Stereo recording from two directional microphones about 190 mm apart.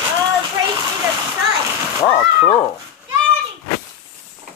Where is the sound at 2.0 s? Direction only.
30° left (ahead or behind).